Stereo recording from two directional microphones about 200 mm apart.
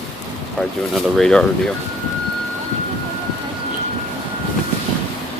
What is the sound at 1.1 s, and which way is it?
Speech, 5° left (ahead or behind).